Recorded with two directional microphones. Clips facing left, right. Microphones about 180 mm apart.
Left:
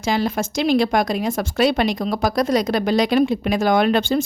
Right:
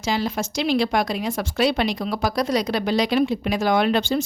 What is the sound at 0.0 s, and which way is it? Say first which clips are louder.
Speech: left 3 dB; 50° left (ahead or behind).